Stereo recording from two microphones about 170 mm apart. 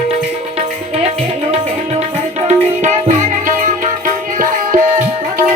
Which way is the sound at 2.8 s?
50° right (ahead or behind).